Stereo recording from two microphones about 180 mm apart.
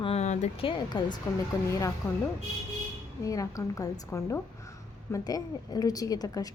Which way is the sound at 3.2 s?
20° left (ahead or behind).